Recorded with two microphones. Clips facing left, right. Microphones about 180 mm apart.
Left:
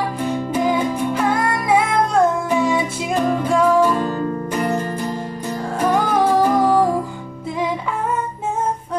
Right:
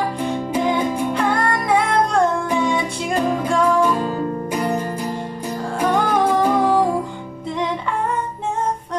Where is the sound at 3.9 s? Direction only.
10° right (ahead or behind).